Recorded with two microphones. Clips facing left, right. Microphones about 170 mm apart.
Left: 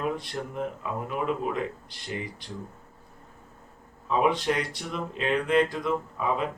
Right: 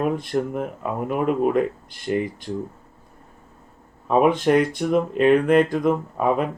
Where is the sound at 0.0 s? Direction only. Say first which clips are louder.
Right 8 dB; 55° right (ahead or behind).